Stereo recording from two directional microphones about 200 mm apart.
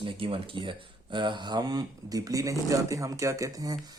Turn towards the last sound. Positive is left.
turn(degrees=-20)  # may be behind; listen again after turning